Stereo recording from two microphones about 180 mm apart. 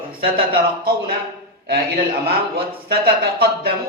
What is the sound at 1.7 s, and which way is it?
A man's voice, 55° right (ahead or behind).